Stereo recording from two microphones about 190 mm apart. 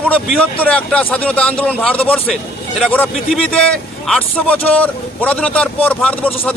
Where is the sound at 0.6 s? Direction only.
5° left (ahead or behind).